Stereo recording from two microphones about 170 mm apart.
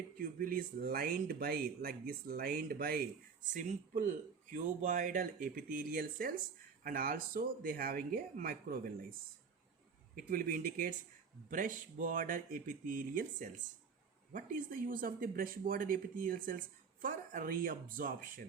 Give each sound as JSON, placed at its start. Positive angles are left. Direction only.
{"t": 0.2, "sound": "speech", "side_deg": -55}
{"t": 3.5, "sound": "speech", "side_deg": -50}
{"t": 10.2, "sound": "speech", "side_deg": -55}